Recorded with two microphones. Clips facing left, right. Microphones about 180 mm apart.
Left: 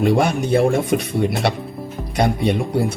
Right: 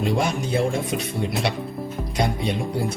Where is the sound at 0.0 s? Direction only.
60° left (ahead or behind).